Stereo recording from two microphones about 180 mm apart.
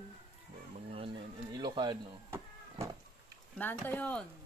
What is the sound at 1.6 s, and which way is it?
Speech, 25° right (ahead or behind).